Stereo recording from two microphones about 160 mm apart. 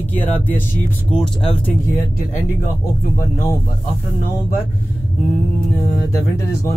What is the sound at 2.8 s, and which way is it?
Speech, 15° left (ahead or behind).